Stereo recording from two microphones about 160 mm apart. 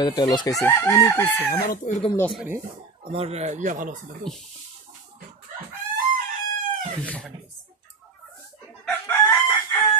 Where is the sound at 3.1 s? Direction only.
40° right (ahead or behind).